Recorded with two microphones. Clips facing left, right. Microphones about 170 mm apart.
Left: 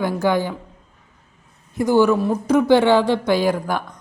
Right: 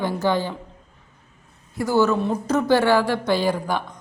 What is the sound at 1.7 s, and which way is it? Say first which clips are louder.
Speech: left 4 dB; 15° left (ahead or behind).